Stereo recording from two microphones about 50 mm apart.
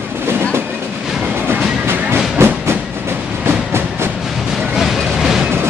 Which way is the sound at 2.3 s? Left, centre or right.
Right.